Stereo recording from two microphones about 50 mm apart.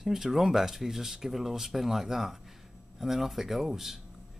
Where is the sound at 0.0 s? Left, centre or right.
Centre.